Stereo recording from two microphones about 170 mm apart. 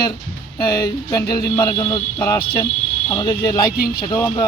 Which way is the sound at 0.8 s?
20° left (ahead or behind).